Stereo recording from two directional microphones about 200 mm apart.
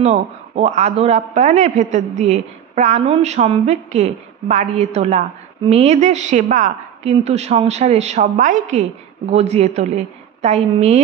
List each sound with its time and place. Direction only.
0.0 s a woman's voice: 35° right (ahead or behind)